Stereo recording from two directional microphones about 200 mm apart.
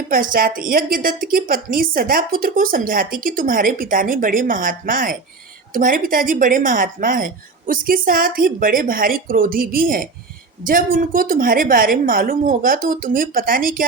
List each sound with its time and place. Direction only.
0.1 s a woman's voice: 45° right (ahead or behind)